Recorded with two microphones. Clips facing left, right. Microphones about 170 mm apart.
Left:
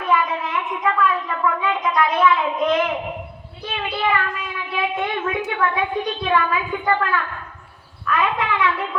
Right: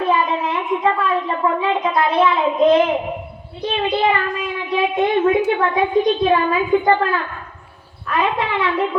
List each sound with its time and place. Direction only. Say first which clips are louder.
0.0 s a woman's voice: right 3 dB; 30° right (ahead or behind)
4.7 s a child's voice: right 7 dB; 35° right (ahead or behind)